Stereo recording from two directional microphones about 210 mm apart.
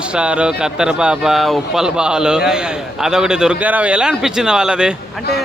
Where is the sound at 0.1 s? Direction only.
5° right (ahead or behind).